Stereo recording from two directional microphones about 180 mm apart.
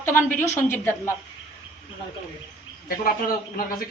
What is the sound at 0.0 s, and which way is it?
A woman's voice, 15° left (ahead or behind).